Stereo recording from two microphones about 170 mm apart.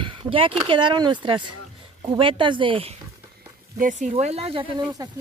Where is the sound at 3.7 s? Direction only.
50° right (ahead or behind); by 4.7 s 30° right (ahead or behind).